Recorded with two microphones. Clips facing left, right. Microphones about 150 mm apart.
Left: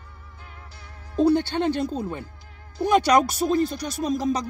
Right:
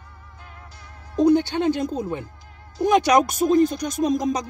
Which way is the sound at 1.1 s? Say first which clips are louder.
Right 2 dB; 15° right (ahead or behind).